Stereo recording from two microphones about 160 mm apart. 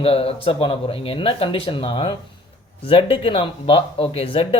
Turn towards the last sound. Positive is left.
turn(degrees=35)  # may be behind; listen again after turning